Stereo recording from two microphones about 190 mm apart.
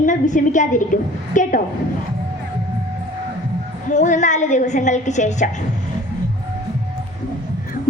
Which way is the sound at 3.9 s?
40° left (ahead or behind).